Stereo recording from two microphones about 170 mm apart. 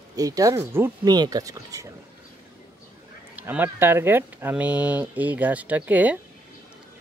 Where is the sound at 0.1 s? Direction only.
20° right (ahead or behind).